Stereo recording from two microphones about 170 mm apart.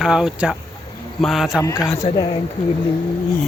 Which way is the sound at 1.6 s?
20° left (ahead or behind).